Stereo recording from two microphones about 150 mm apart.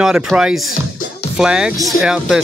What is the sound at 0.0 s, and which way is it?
Speech, 5° right (ahead or behind).